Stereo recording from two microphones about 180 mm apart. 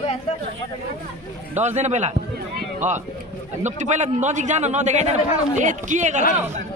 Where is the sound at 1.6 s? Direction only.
40° right (ahead or behind).